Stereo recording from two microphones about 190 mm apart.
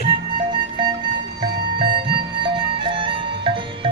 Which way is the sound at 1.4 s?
25° right (ahead or behind).